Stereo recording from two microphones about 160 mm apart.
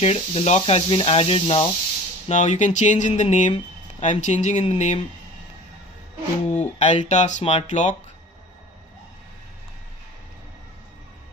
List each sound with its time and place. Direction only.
0.0 s speech: 45° left (ahead or behind)
6.5 s a sound: 45° left (ahead or behind)
7.1 s speech: 45° left (ahead or behind)